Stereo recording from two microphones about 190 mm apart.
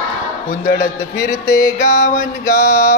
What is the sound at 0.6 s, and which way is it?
Music, 50° left (ahead or behind).